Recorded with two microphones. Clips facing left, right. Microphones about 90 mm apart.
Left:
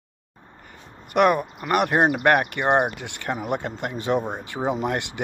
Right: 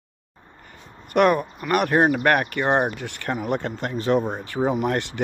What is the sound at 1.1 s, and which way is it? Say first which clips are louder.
Speech: right 1 dB; 15° left (ahead or behind).